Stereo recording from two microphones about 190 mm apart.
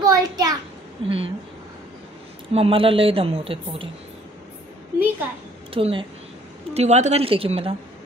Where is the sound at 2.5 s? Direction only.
30° right (ahead or behind).